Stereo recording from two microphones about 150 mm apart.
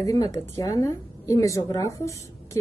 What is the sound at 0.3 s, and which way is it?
A woman's voice, 20° left (ahead or behind).